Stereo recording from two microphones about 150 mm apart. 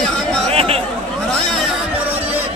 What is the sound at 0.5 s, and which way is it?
Chatter, 40° right (ahead or behind).